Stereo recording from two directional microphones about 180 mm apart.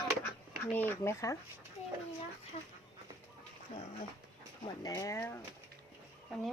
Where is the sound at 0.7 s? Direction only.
10° left (ahead or behind).